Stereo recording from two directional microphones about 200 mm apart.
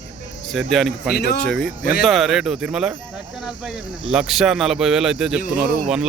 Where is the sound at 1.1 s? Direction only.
55° left (ahead or behind).